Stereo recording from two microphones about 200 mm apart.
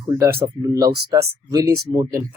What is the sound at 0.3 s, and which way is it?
Speech, 20° right (ahead or behind).